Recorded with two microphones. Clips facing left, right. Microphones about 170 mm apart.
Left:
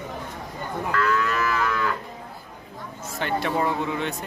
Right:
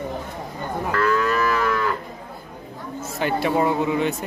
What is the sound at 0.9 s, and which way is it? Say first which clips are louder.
Livestock: right 3 dB; 40° right (ahead or behind).